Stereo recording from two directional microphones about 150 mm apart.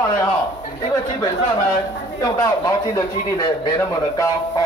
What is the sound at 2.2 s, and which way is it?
A man's voice, 20° left (ahead or behind).